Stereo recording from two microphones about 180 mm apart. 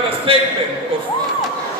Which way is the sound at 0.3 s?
30° right (ahead or behind).